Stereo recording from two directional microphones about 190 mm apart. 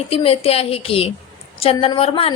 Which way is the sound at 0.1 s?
30° left (ahead or behind).